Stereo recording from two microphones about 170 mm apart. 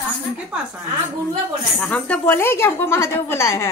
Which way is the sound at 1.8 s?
5° left (ahead or behind).